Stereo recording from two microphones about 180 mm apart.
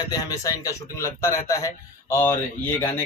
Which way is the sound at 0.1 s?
20° left (ahead or behind).